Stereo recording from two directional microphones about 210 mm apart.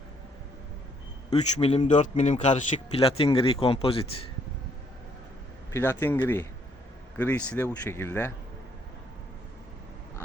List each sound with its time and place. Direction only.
1.3 s a man's voice: 30° left (ahead or behind)
5.7 s speech: 10° left (ahead or behind)